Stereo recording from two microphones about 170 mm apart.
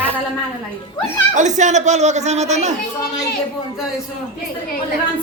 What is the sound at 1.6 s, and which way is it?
Speech, 45° right (ahead or behind).